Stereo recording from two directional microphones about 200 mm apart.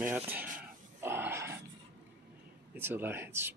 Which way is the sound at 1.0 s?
10° right (ahead or behind).